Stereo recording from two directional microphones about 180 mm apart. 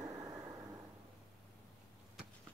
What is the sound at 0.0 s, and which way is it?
Vehicle, 15° right (ahead or behind).